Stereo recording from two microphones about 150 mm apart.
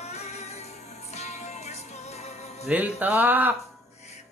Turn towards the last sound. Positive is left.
turn(degrees=-10)  # may be behind; listen again after turning